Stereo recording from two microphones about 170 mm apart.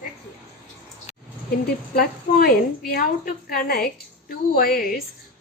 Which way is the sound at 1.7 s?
65° left (ahead or behind).